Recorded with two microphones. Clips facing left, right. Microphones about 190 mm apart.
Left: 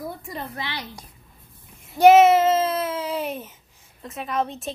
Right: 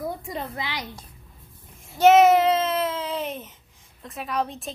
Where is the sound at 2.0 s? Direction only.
10° left (ahead or behind).